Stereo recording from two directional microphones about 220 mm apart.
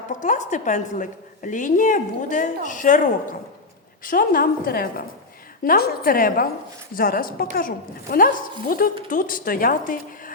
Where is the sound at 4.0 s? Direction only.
40° left (ahead or behind).